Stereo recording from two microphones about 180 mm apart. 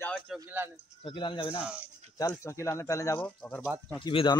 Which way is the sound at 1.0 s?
25° left (ahead or behind).